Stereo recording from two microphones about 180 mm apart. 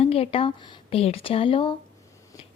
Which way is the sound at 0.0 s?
30° left (ahead or behind).